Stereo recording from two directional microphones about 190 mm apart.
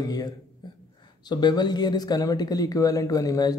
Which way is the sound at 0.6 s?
25° left (ahead or behind).